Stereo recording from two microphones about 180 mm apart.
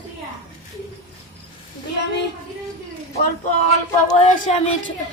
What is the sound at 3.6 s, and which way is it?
Speech, 35° left (ahead or behind).